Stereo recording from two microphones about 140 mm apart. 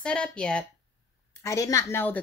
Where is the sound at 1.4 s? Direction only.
20° left (ahead or behind).